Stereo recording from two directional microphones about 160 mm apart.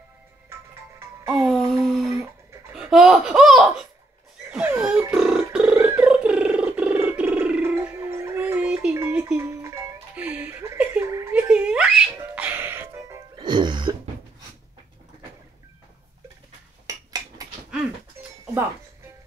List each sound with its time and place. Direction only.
1.3 s music: centre (ahead or behind)
2.7 s belly laugh: 5° right (ahead or behind)
4.5 s a sound: 10° right (ahead or behind)
8.9 s music: 15° right (ahead or behind)
13.4 s music: 30° right (ahead or behind)
16.8 s dishes: 25° right (ahead or behind)